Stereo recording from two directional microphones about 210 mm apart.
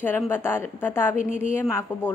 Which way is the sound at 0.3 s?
10° left (ahead or behind).